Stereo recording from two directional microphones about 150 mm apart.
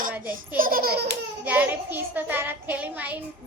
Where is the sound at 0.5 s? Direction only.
70° right (ahead or behind).